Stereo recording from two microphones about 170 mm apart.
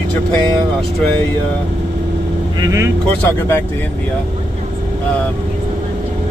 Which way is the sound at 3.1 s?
15° left (ahead or behind).